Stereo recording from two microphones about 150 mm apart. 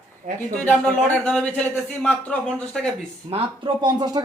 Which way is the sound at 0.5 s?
5° left (ahead or behind).